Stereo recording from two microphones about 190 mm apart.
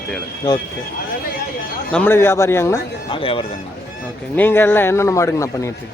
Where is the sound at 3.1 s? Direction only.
30° left (ahead or behind).